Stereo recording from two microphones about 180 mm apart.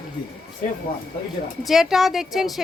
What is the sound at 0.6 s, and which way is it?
Speech, 45° left (ahead or behind).